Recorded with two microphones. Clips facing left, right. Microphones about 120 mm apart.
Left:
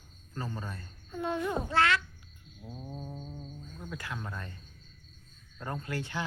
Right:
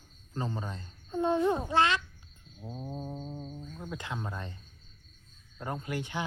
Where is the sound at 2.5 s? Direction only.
25° right (ahead or behind).